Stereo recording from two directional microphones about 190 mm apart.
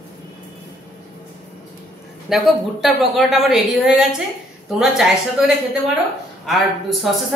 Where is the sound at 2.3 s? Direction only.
Centre (ahead or behind).